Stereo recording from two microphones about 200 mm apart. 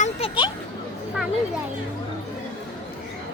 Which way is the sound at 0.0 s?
25° left (ahead or behind).